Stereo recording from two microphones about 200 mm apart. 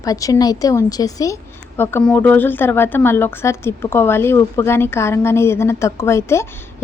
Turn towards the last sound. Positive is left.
turn(degrees=15)  # may be behind; listen again after turning